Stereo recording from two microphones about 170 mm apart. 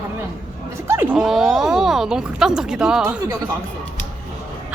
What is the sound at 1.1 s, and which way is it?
Speech, 5° right (ahead or behind).